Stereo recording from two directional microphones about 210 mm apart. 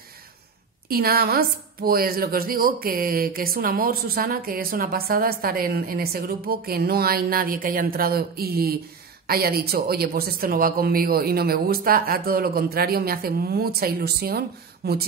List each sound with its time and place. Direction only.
0.8 s a woman's voice: 45° right (ahead or behind)